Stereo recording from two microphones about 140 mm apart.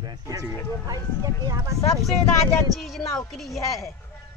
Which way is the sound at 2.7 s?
Centre (ahead or behind).